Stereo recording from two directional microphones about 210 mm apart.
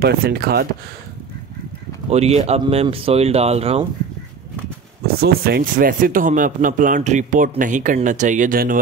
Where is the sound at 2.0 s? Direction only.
30° right (ahead or behind).